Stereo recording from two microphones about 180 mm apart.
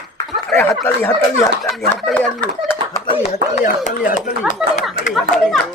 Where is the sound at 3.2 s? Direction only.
45° left (ahead or behind).